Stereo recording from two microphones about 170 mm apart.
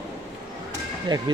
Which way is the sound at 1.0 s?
25° right (ahead or behind).